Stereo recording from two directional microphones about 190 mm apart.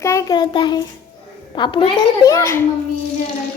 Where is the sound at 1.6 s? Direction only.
25° left (ahead or behind).